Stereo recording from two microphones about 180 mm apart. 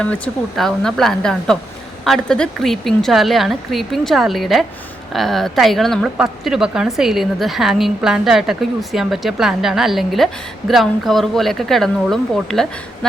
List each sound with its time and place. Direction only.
0.0 s a woman's voice: 5° left (ahead or behind)